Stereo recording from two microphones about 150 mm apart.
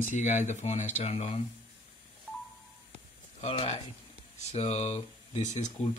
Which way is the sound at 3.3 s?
45° left (ahead or behind).